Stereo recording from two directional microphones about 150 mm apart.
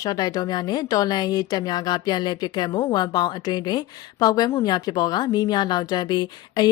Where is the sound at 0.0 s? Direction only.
25° left (ahead or behind).